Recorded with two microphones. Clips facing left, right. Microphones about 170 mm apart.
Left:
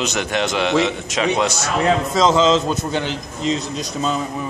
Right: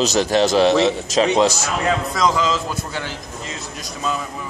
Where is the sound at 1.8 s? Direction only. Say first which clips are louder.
Left 3 dB; 25° left (ahead or behind).